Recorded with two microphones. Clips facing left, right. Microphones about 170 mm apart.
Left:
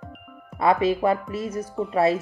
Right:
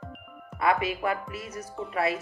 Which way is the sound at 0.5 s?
25° left (ahead or behind).